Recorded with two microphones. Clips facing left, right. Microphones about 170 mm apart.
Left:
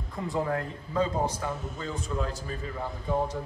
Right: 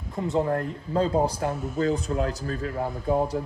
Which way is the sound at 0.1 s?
20° right (ahead or behind).